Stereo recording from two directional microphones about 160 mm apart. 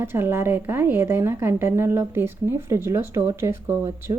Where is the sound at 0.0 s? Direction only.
15° right (ahead or behind).